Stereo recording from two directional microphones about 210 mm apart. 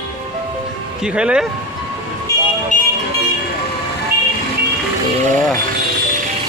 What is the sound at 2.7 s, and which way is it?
Vehicle, 35° left (ahead or behind).